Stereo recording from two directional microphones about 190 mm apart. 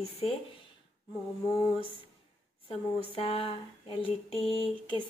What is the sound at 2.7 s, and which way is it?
Speech, 30° left (ahead or behind).